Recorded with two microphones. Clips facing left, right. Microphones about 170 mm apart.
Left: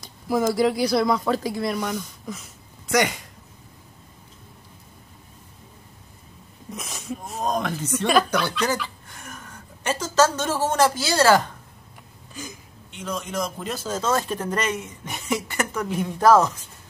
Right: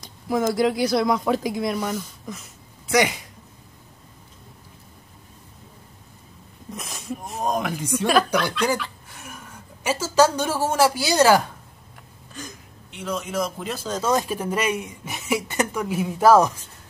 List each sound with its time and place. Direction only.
0.0 s a sound: 5° left (ahead or behind)
0.6 s speech: centre (ahead or behind)
6.7 s a sound: centre (ahead or behind)
7.2 s a woman's voice: 5° right (ahead or behind)
12.4 s speech: centre (ahead or behind)
14.0 s speech: 10° right (ahead or behind)